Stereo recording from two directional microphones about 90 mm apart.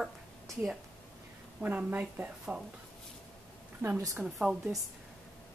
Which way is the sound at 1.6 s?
20° right (ahead or behind).